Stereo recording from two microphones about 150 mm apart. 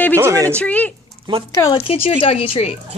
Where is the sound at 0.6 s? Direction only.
10° left (ahead or behind).